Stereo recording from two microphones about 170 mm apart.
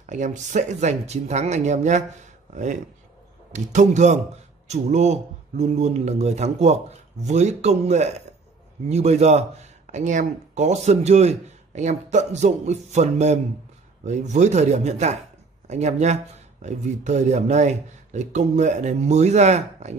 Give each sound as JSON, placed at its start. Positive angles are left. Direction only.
{"t": 0.0, "sound": "a man's voice", "side_deg": -45}